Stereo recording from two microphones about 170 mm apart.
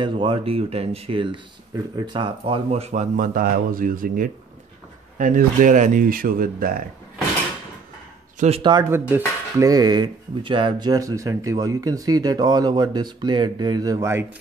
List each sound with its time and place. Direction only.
0.0 s speech: 30° right (ahead or behind); by 6.8 s 55° right (ahead or behind)
8.4 s speech: 35° right (ahead or behind)
8.9 s dishes: 10° right (ahead or behind)
9.6 s speech: 20° right (ahead or behind)